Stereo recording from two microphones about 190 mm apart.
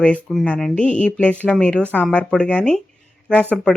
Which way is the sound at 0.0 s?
5° left (ahead or behind).